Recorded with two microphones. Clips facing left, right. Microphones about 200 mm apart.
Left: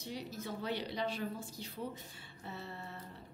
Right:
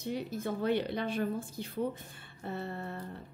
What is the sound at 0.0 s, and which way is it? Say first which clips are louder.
A woman's voice: right 7 dB; 55° right (ahead or behind).